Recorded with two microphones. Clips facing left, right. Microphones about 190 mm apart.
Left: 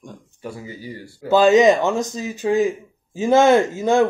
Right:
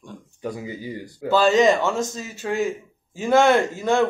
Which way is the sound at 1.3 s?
20° left (ahead or behind).